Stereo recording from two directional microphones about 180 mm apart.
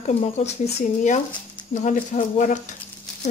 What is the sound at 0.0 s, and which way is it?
Speech, 40° left (ahead or behind).